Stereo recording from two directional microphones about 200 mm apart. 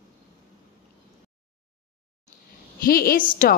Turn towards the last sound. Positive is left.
turn(degrees=45)  # may be behind; listen again after turning